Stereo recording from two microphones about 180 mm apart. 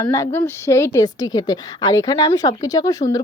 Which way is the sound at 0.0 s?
20° left (ahead or behind).